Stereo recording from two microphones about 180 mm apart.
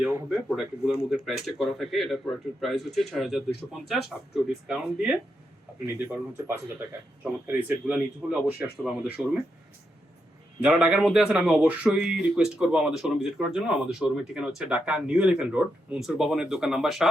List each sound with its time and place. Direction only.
0.0 s speech: 10° right (ahead or behind)
10.6 s speech: 5° right (ahead or behind)